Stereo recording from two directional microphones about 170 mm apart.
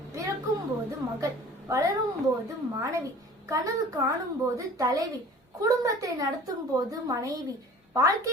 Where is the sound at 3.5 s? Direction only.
20° right (ahead or behind).